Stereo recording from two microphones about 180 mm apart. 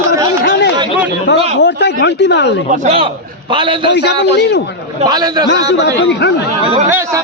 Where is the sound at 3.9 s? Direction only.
70° left (ahead or behind).